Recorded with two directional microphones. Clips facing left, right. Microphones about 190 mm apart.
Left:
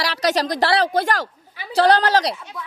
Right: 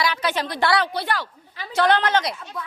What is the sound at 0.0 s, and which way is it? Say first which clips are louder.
Speech: left 3 dB; 35° left (ahead or behind).